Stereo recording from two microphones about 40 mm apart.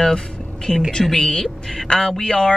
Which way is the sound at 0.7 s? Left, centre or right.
Centre.